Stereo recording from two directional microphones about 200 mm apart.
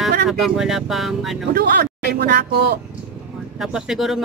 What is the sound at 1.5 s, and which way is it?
Speech, 50° right (ahead or behind).